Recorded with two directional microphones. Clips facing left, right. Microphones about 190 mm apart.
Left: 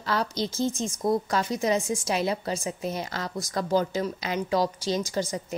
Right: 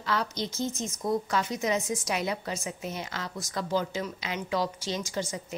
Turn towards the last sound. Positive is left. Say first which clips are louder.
# left 5 dB
turn(degrees=35)  # may be behind; listen again after turning